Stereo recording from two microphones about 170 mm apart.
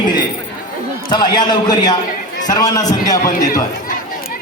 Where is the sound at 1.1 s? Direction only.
25° left (ahead or behind).